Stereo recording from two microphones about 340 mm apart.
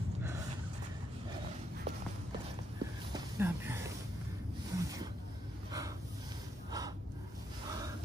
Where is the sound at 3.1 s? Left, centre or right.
Centre.